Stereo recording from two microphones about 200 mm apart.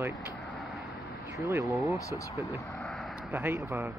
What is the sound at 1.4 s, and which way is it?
Speech, 15° right (ahead or behind).